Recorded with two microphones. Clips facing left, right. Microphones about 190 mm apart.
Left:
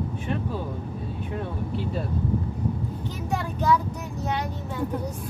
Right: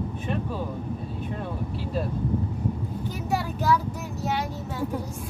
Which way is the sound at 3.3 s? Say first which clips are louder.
Left 1 dB; 5° right (ahead or behind).